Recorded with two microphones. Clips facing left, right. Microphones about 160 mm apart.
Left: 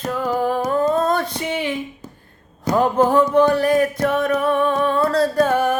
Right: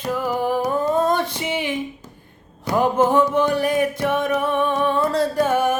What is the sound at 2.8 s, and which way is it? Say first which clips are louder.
Music: left 1 dB; 20° right (ahead or behind).